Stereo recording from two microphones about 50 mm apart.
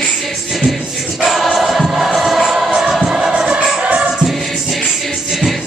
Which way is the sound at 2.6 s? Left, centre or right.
Centre.